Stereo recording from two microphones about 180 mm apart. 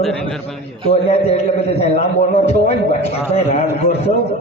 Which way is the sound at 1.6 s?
35° left (ahead or behind).